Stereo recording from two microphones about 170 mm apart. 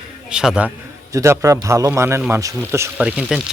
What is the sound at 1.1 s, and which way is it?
A man's voice, 15° right (ahead or behind).